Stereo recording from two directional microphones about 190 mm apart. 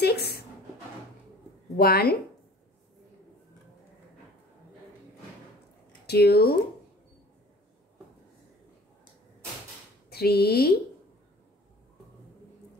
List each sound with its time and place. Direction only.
0.0 s a sound: 60° left (ahead or behind)
1.8 s speech: 50° left (ahead or behind)
6.0 s speech: 55° left (ahead or behind)
10.0 s speech: 55° left (ahead or behind)